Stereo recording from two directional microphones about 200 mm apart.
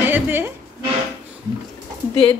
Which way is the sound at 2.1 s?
5° left (ahead or behind).